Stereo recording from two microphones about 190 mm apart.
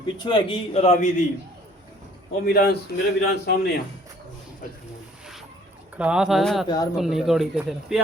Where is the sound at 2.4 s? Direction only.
55° left (ahead or behind).